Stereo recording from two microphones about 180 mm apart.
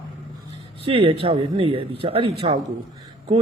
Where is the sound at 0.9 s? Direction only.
30° right (ahead or behind).